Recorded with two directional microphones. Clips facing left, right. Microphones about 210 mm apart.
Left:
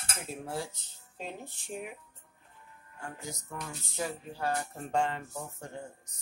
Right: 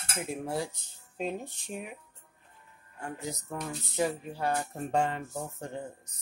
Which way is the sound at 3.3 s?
20° right (ahead or behind).